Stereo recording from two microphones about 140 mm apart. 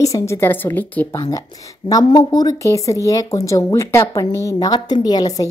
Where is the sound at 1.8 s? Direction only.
30° left (ahead or behind).